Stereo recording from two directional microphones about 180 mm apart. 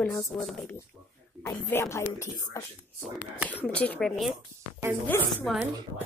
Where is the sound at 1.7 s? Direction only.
15° left (ahead or behind).